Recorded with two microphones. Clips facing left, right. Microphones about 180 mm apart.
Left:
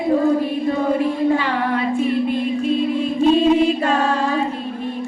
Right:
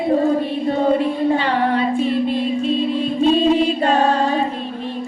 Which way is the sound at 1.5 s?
30° right (ahead or behind).